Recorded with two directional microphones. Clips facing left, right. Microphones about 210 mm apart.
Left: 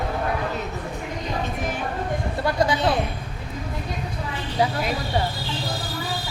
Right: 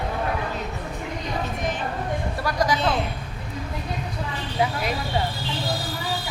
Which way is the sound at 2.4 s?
25° left (ahead or behind).